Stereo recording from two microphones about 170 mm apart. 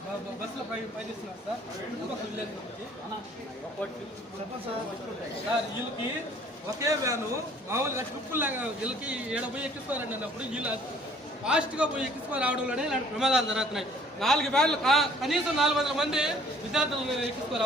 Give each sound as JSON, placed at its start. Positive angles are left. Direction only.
{"t": 6.7, "sound": "a man's voice", "side_deg": -20}